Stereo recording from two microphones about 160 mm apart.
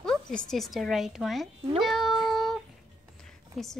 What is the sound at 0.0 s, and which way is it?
Speech, 5° left (ahead or behind).